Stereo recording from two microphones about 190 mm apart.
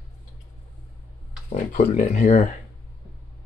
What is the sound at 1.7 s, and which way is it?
Speech, 40° left (ahead or behind).